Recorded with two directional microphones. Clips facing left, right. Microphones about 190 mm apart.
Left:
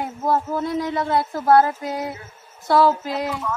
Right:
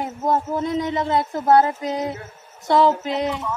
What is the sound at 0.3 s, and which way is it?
Speech, 20° right (ahead or behind).